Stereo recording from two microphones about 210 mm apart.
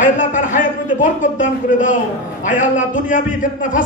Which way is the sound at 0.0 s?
35° left (ahead or behind).